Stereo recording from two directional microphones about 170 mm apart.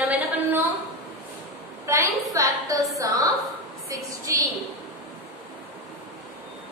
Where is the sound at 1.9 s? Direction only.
15° right (ahead or behind).